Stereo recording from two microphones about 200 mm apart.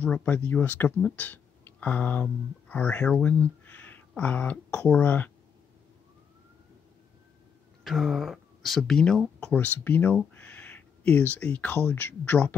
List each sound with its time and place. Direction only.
0.0 s speech: 5° left (ahead or behind)
7.8 s speech: centre (ahead or behind)